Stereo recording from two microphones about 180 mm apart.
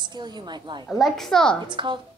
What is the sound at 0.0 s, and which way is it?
Speech, 25° right (ahead or behind).